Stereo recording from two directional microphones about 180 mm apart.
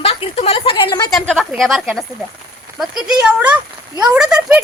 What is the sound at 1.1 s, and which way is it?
Speech, centre (ahead or behind).